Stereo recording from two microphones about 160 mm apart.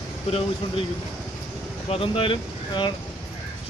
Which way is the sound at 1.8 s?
35° left (ahead or behind).